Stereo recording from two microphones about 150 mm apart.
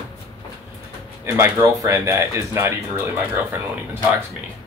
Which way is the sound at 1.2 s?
15° right (ahead or behind).